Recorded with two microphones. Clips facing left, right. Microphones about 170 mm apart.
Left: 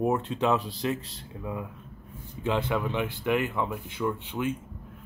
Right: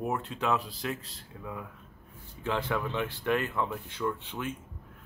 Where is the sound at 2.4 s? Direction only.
15° left (ahead or behind).